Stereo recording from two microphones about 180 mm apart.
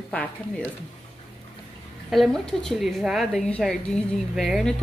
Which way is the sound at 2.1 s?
Centre (ahead or behind).